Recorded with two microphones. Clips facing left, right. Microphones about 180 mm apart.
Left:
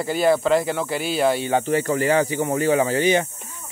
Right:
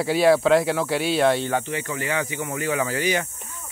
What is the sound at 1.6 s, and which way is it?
Speech, 40° left (ahead or behind).